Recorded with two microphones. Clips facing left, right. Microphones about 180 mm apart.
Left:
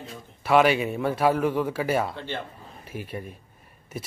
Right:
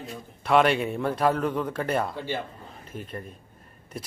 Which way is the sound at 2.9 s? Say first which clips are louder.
Left 2 dB; 5° left (ahead or behind).